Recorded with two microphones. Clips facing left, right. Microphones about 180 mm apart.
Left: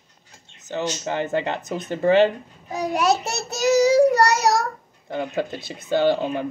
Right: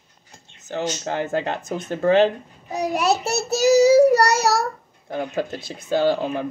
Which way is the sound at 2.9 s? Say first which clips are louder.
Even; 5° right (ahead or behind).